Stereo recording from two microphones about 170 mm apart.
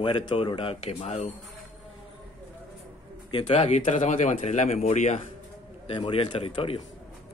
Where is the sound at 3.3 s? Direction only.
35° left (ahead or behind).